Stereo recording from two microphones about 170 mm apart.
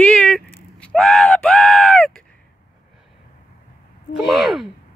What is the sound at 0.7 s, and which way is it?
Screaming, 5° left (ahead or behind).